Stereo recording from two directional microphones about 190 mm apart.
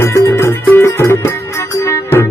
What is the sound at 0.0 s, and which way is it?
Music, 15° left (ahead or behind).